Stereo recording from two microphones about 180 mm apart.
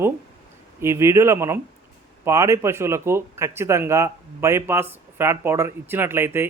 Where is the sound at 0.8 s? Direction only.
15° right (ahead or behind).